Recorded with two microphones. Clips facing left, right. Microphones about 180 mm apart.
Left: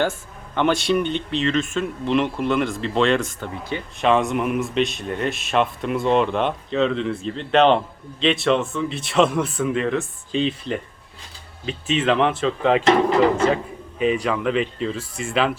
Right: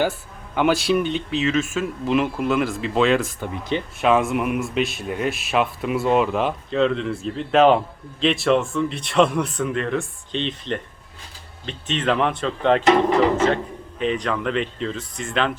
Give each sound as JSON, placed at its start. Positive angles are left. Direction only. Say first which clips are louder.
{"t": 0.5, "sound": "a man's voice", "louder": "right 1 dB", "side_deg": -5}
{"t": 3.5, "sound": "speech", "louder": "right 6 dB", "side_deg": -20}
{"t": 4.0, "sound": "a man's voice", "louder": "even", "side_deg": -5}